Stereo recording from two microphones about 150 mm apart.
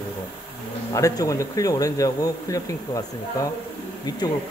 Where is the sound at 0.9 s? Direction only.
20° left (ahead or behind).